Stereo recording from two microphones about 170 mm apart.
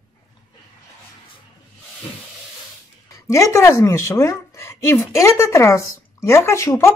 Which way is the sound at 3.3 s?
15° left (ahead or behind).